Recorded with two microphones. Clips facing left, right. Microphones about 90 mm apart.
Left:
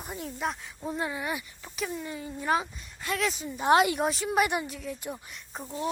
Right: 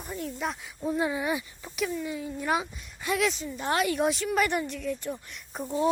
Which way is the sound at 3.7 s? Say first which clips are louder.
Left 5 dB; 20° left (ahead or behind).